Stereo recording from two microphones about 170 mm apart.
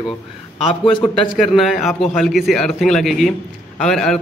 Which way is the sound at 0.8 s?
30° left (ahead or behind).